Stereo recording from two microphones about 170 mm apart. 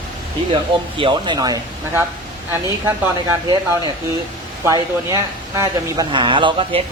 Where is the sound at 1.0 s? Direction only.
30° right (ahead or behind).